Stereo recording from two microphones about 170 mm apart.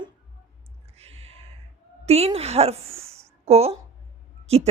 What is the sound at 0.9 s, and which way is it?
Gasp, 35° right (ahead or behind).